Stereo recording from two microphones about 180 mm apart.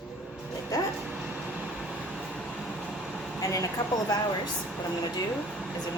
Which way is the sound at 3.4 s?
20° left (ahead or behind).